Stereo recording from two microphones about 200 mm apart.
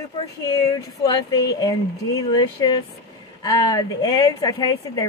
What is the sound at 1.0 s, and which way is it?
A woman's voice, 20° left (ahead or behind).